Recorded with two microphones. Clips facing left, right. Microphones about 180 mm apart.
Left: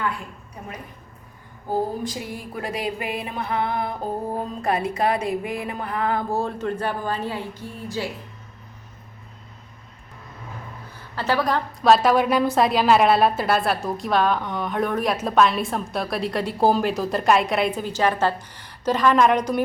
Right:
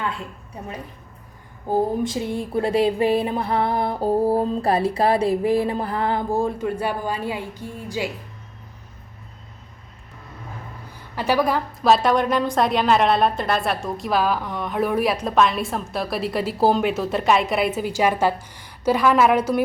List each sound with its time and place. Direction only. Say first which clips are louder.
1.7 s music: right 4 dB; 25° right (ahead or behind)
6.3 s a woman's voice: right 2 dB; 10° right (ahead or behind)
11.1 s a woman's voice: right 2 dB; 15° right (ahead or behind)